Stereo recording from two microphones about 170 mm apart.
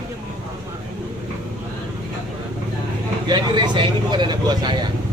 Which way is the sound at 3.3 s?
25° right (ahead or behind).